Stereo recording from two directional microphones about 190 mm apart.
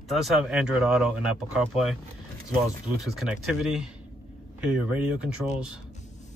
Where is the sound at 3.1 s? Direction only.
Centre (ahead or behind).